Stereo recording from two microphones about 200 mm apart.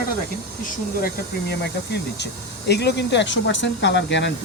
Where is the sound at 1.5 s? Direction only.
55° left (ahead or behind).